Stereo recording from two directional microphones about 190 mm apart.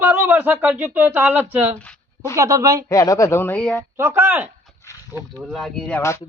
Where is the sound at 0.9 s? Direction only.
10° right (ahead or behind).